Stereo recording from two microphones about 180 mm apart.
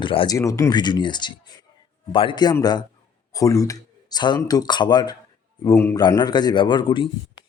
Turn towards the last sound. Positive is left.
turn(degrees=25)  # may be behind; listen again after turning